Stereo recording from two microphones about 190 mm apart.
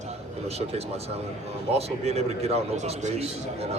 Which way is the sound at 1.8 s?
35° right (ahead or behind).